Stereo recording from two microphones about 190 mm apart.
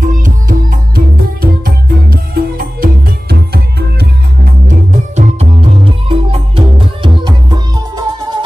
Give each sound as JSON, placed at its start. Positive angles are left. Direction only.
{"t": 0.0, "sound": "music", "side_deg": -45}
{"t": 5.1, "sound": "music", "side_deg": -35}